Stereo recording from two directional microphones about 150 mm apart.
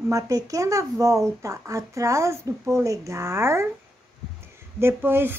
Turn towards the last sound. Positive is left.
turn(degrees=-15)  # may be behind; listen again after turning